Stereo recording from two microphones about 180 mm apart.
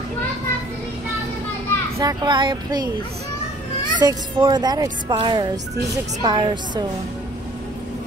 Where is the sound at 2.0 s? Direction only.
25° right (ahead or behind).